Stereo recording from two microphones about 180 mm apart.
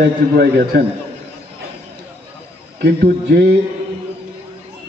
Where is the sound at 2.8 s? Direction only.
60° right (ahead or behind).